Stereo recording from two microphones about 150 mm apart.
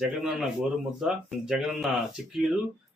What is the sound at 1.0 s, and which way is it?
Speech, 5° right (ahead or behind).